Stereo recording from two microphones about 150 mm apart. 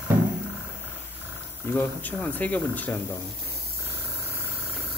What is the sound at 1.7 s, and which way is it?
Speech, 10° left (ahead or behind).